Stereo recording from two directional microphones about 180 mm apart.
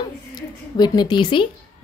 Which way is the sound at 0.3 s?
25° left (ahead or behind).